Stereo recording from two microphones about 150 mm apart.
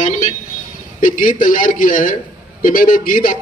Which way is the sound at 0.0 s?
55° left (ahead or behind).